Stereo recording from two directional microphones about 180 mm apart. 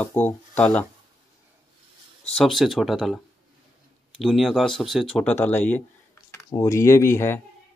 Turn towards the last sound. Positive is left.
turn(degrees=15)  # may be behind; listen again after turning